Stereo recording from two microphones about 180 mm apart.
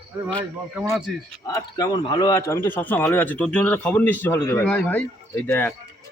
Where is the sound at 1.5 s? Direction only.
20° left (ahead or behind).